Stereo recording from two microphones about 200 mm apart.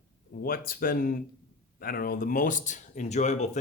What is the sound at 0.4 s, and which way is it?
Speech, 45° left (ahead or behind).